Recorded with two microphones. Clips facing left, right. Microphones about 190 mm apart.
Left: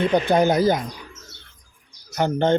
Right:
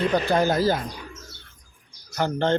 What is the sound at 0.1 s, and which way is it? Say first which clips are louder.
Speech: left 3 dB; 20° left (ahead or behind).